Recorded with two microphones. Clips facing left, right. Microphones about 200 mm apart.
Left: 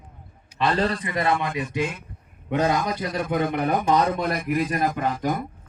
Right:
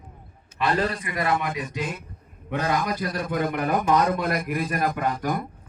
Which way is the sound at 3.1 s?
25° left (ahead or behind).